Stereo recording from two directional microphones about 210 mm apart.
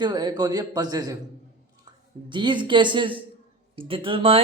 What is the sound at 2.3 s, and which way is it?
Speech, 20° right (ahead or behind).